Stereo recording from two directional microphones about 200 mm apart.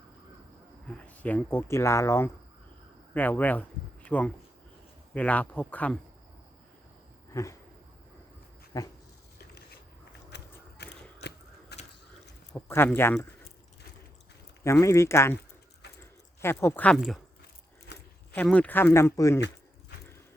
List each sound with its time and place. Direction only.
0.9 s speech: 5° left (ahead or behind)
7.3 s speech: 15° left (ahead or behind)
8.7 s speech: 15° left (ahead or behind)
10.3 s a sound: 55° left (ahead or behind)
12.5 s speech: 10° left (ahead or behind)
14.6 s speech: 15° left (ahead or behind)
16.4 s speech: 10° left (ahead or behind)
18.3 s speech: 5° left (ahead or behind)